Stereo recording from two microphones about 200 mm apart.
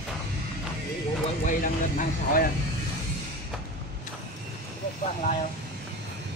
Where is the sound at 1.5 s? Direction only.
40° left (ahead or behind).